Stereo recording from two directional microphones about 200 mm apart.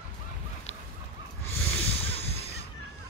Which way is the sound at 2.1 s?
30° left (ahead or behind).